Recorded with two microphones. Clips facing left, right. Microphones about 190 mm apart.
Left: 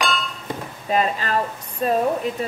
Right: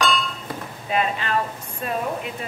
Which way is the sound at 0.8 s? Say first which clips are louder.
Left 2 dB; 40° left (ahead or behind).